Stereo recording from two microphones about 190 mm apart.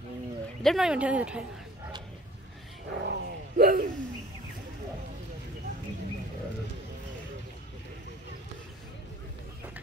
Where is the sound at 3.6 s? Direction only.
50° right (ahead or behind).